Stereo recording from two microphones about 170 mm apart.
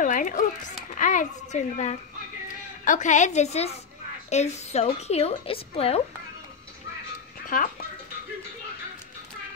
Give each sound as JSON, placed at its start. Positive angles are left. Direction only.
{"t": 0.0, "sound": "a sound", "side_deg": 50}
{"t": 0.9, "sound": "a child's voice", "side_deg": 50}
{"t": 7.4, "sound": "speech", "side_deg": 50}